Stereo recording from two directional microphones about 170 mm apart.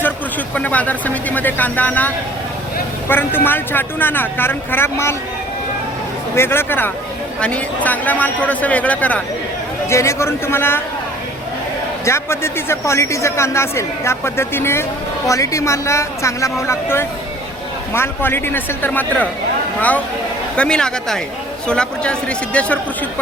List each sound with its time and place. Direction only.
0.5 s speech: 10° left (ahead or behind)
6.3 s speech: 15° left (ahead or behind)
12.0 s speech: 15° left (ahead or behind)
20.6 s speech: 5° left (ahead or behind)